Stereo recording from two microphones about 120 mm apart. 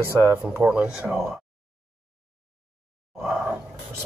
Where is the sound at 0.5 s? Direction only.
10° right (ahead or behind).